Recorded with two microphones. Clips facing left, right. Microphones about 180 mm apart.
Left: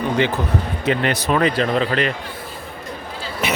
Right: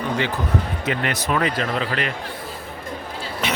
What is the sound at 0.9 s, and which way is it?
Speech, 30° left (ahead or behind).